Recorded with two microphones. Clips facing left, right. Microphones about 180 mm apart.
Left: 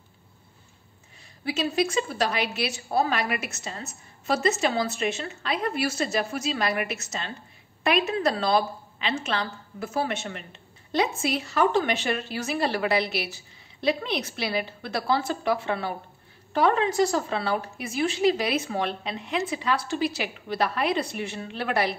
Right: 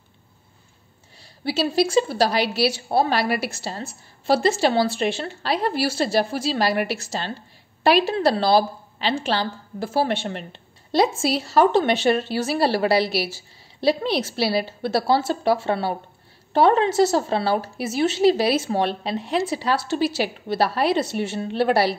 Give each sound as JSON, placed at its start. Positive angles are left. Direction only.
{"t": 1.2, "sound": "a woman's voice", "side_deg": -30}